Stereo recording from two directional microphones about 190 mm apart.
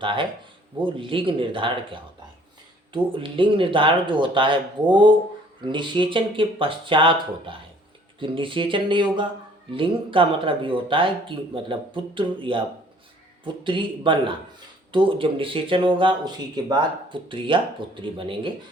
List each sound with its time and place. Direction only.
0.0 s speech: 25° right (ahead or behind)